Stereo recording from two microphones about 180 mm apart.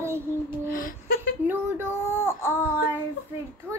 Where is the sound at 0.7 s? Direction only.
50° left (ahead or behind).